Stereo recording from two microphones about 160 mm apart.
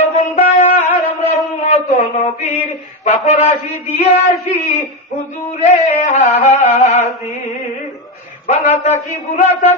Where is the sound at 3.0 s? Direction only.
50° left (ahead or behind).